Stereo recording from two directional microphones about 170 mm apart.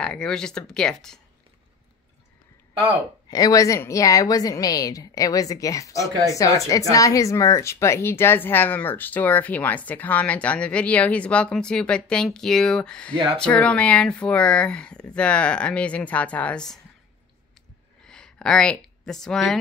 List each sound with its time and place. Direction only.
0.0 s speech: 5° left (ahead or behind)
3.3 s a woman's voice: 20° left (ahead or behind); by 16.8 s 5° left (ahead or behind)
18.0 s speech: 5° left (ahead or behind)